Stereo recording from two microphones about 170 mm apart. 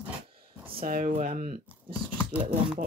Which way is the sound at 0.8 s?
55° right (ahead or behind).